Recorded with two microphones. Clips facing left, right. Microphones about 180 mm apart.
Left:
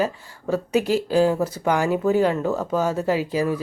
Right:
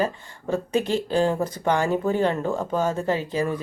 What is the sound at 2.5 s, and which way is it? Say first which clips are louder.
Speech: left 2 dB; 10° right (ahead or behind).